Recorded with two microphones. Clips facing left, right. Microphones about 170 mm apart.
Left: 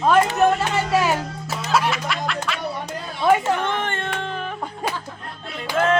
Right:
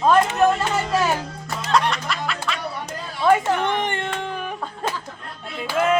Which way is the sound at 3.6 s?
15° right (ahead or behind).